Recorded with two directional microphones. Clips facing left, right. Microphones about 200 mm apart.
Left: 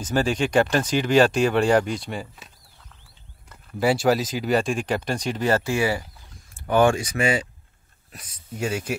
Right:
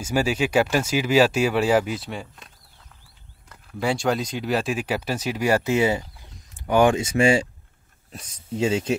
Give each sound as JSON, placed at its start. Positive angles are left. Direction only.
{"t": 0.0, "sound": "speech", "side_deg": -10}
{"t": 8.5, "sound": "speech", "side_deg": -25}